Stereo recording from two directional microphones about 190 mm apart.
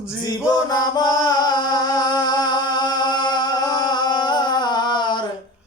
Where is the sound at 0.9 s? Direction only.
20° left (ahead or behind).